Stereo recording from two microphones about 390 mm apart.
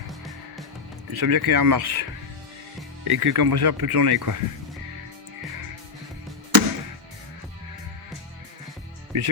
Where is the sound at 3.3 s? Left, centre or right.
Right.